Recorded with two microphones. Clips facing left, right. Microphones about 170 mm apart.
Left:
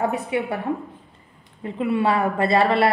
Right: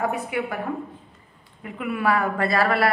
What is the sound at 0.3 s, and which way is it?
Speech, 25° left (ahead or behind).